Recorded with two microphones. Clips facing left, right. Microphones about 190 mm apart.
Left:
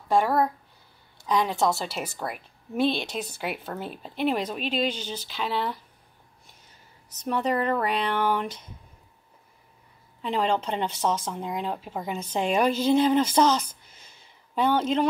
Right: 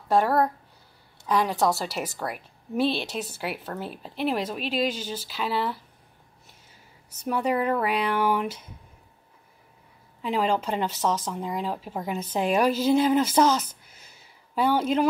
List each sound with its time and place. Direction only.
0.1 s speech: 5° right (ahead or behind)
7.1 s speech: 10° right (ahead or behind)
10.2 s speech: 5° right (ahead or behind)